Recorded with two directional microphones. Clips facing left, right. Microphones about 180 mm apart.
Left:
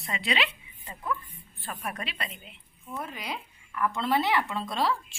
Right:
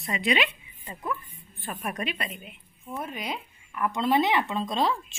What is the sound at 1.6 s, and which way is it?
Speech, 20° right (ahead or behind).